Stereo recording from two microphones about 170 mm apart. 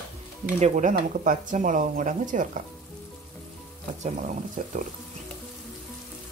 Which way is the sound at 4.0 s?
50° right (ahead or behind).